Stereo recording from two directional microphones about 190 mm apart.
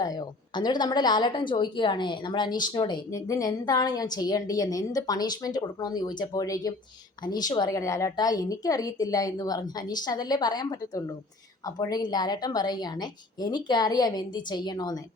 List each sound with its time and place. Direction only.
0.0 s a woman's voice: 20° left (ahead or behind)